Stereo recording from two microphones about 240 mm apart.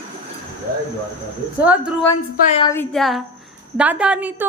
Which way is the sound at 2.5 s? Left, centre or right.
Left.